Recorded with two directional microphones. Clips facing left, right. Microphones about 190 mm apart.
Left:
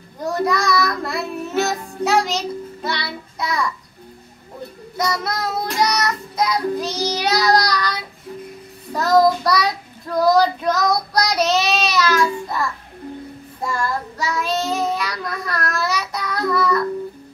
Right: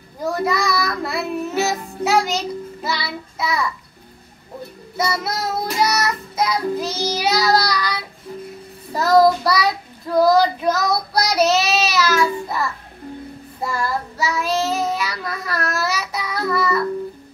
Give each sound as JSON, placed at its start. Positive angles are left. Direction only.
{"t": 0.2, "sound": "music", "side_deg": 0}
{"t": 4.9, "sound": "child singing", "side_deg": -5}
{"t": 8.9, "sound": "child singing", "side_deg": -5}
{"t": 13.7, "sound": "child singing", "side_deg": -5}